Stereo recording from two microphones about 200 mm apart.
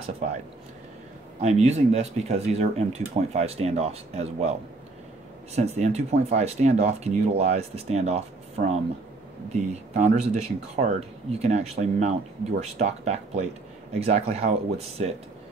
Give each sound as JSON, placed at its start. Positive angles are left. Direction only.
{"t": 1.6, "sound": "speech", "side_deg": -30}